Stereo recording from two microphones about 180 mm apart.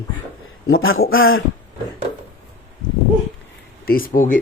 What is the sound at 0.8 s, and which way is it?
Speech, 90° left.